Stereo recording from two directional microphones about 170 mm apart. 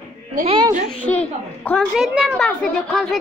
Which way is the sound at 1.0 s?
10° left (ahead or behind).